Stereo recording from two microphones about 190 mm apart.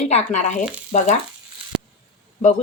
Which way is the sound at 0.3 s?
40° left (ahead or behind).